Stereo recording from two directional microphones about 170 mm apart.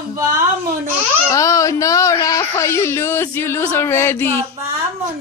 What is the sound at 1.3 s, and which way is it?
Speech, 20° left (ahead or behind).